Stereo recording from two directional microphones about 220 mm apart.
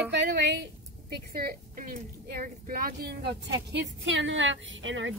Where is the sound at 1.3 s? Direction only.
40° right (ahead or behind).